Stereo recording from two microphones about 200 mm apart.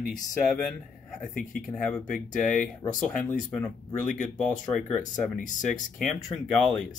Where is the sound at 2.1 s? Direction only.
40° left (ahead or behind).